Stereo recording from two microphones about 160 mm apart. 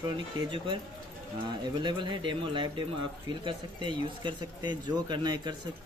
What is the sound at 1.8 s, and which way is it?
Speech, 30° right (ahead or behind).